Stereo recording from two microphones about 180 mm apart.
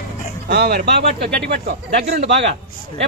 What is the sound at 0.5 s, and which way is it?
Speech, 65° right (ahead or behind).